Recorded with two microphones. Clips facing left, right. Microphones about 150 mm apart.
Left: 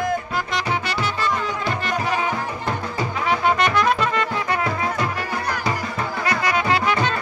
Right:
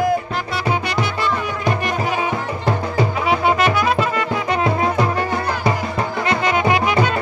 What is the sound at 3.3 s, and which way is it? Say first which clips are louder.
Music: right 1 dB; 5° right (ahead or behind).